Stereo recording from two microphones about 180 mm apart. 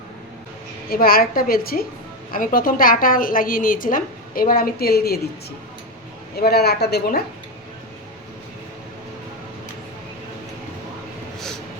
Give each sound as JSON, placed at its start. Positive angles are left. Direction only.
{"t": 0.9, "sound": "a woman's voice", "side_deg": 55}
{"t": 6.3, "sound": "a woman's voice", "side_deg": 60}